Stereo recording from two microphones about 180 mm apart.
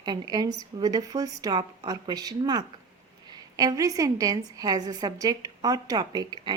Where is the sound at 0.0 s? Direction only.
25° right (ahead or behind).